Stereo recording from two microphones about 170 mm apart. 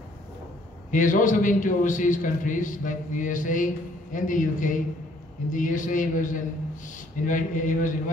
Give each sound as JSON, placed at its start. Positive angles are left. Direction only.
{"t": 0.9, "sound": "a man's voice", "side_deg": 50}